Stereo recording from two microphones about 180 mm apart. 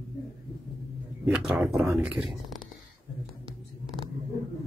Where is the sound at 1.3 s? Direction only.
5° right (ahead or behind).